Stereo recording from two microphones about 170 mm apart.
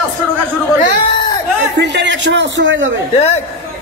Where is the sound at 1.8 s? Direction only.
90° right.